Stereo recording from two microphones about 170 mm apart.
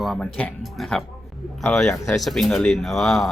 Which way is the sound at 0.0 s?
Centre (ahead or behind).